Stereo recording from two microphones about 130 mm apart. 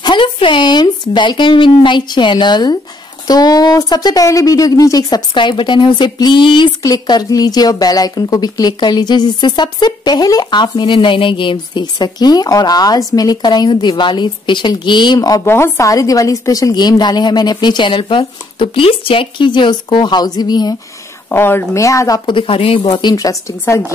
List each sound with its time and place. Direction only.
0.0 s speech: 40° left (ahead or behind)
21.3 s speech: 15° left (ahead or behind)